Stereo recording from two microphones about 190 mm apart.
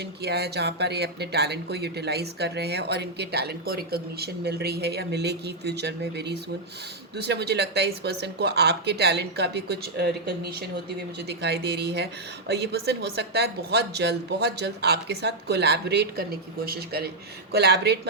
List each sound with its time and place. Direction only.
0.2 s speech: 60° right (ahead or behind)